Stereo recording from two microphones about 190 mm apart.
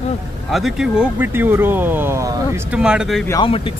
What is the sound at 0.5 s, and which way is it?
Speech, centre (ahead or behind).